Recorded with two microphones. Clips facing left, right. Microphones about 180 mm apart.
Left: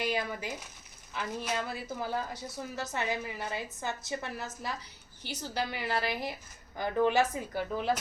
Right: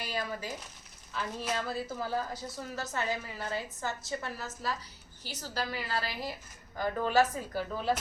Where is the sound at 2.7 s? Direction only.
20° left (ahead or behind).